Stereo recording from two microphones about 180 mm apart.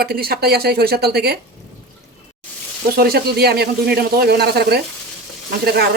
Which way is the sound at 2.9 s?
60° right (ahead or behind).